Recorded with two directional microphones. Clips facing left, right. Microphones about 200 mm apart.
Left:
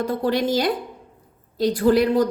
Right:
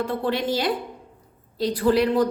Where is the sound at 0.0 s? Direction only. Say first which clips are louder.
Left 3 dB; 40° left (ahead or behind).